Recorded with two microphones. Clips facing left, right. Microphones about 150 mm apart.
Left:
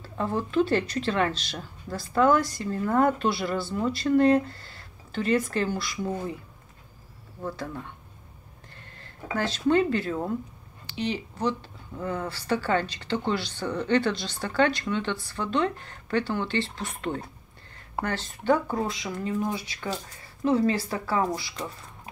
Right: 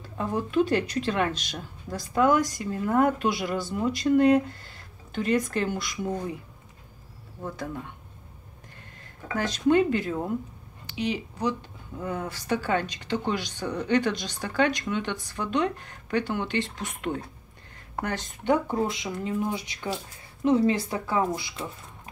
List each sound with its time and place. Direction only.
0.0 s speech: 15° right (ahead or behind)
7.4 s speech: 15° right (ahead or behind)
9.7 s speech: 15° right (ahead or behind)